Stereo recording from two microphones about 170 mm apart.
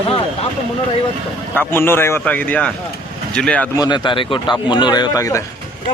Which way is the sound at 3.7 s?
25° left (ahead or behind).